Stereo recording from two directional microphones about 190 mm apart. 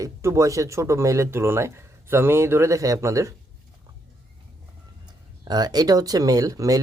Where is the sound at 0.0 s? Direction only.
15° right (ahead or behind).